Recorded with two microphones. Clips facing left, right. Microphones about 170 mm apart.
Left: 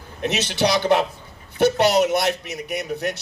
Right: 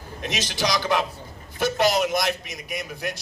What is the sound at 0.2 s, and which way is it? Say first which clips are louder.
A man's voice: left 6 dB; 60° left (ahead or behind).